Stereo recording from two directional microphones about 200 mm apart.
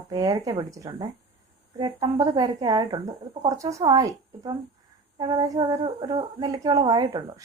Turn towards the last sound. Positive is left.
turn(degrees=-20)  # may be behind; listen again after turning